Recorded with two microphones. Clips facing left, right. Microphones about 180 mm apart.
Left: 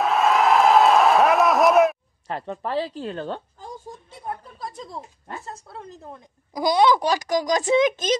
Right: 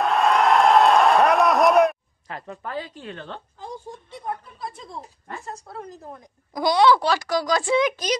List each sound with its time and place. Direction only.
0.0 s a sound: centre (ahead or behind)
2.2 s a woman's voice: 30° left (ahead or behind)
6.5 s a child's voice: 15° left (ahead or behind)